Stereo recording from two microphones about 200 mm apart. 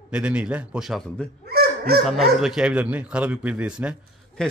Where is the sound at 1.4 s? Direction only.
50° right (ahead or behind).